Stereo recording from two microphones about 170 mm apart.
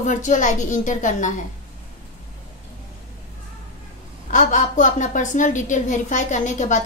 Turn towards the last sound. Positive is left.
turn(degrees=45)  # may be behind; listen again after turning